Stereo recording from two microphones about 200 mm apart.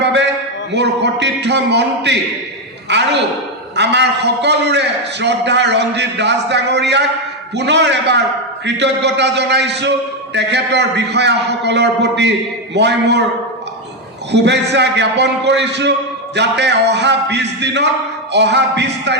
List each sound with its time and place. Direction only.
0.0 s a sound: 60° right (ahead or behind)
0.7 s a man's voice: 60° right (ahead or behind)
14.4 s a man's voice: 60° right (ahead or behind)